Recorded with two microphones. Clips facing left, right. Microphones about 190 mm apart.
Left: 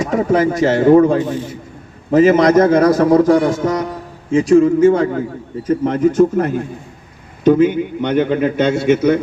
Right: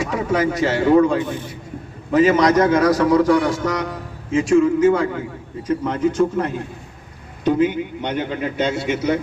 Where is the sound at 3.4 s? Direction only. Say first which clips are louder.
Left 4 dB; 25° left (ahead or behind).